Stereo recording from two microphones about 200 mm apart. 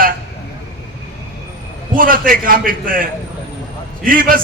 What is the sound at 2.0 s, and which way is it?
A man's voice, 45° right (ahead or behind).